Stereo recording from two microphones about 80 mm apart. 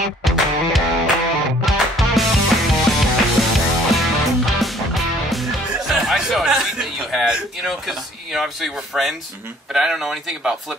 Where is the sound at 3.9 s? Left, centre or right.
Centre.